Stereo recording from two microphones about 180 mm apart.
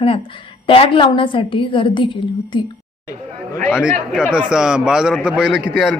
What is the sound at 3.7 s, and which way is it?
A man's voice, 5° right (ahead or behind).